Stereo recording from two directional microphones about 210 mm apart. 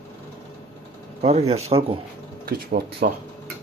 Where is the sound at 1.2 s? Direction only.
30° right (ahead or behind).